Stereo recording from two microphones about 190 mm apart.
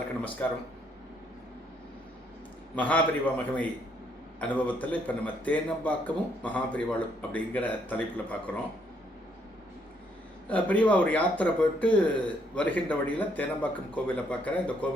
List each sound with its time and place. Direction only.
0.4 s speech: 10° left (ahead or behind)
2.7 s speech: 10° left (ahead or behind)
10.5 s speech: 10° left (ahead or behind)